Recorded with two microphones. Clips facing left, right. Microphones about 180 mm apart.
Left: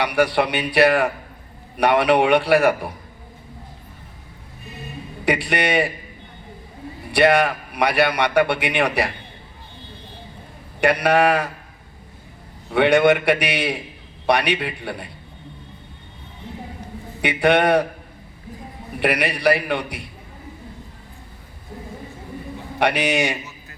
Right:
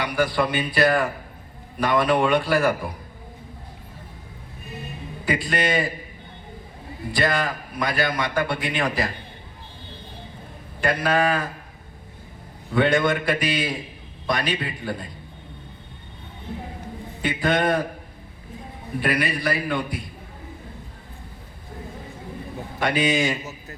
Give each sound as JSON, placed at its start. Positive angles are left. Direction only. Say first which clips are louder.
{"t": 0.0, "sound": "a man's voice", "louder": "left 4 dB", "side_deg": 70}
{"t": 5.2, "sound": "a man's voice", "louder": "left 3 dB", "side_deg": 70}
{"t": 7.1, "sound": "a man's voice", "louder": "left 7 dB", "side_deg": 70}
{"t": 10.8, "sound": "a man's voice", "louder": "left 5 dB", "side_deg": 70}
{"t": 12.7, "sound": "a man's voice", "louder": "left 5 dB", "side_deg": 70}
{"t": 17.2, "sound": "a man's voice", "louder": "left 5 dB", "side_deg": 70}
{"t": 18.9, "sound": "a man's voice", "louder": "left 2 dB", "side_deg": 70}
{"t": 22.8, "sound": "a man's voice", "louder": "left 2 dB", "side_deg": 70}